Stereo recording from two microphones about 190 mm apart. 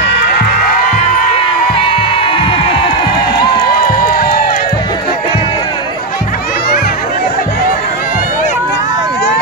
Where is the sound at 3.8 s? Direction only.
50° left (ahead or behind).